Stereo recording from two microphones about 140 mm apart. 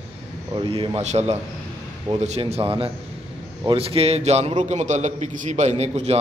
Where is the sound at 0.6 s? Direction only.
40° right (ahead or behind); by 2.4 s 55° right (ahead or behind).